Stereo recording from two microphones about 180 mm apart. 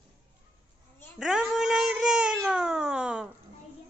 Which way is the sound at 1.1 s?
5° right (ahead or behind).